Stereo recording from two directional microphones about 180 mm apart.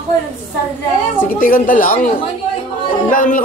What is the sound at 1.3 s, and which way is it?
Speech, 50° left (ahead or behind).